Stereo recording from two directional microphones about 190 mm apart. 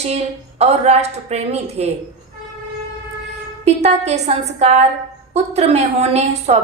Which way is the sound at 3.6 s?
35° right (ahead or behind).